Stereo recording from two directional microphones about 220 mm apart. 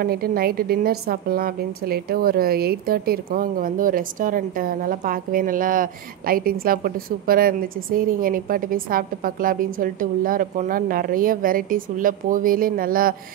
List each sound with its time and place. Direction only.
0.0 s a woman's voice: 45° right (ahead or behind)